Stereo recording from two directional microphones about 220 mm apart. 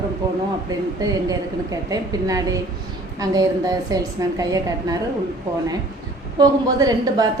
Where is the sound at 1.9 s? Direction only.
15° right (ahead or behind).